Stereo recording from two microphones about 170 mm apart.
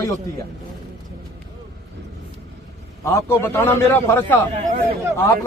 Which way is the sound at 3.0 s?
15° left (ahead or behind).